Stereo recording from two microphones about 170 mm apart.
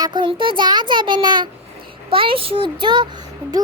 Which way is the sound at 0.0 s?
25° right (ahead or behind).